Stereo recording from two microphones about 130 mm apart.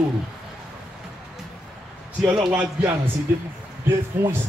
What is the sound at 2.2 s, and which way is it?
Speech, 5° right (ahead or behind).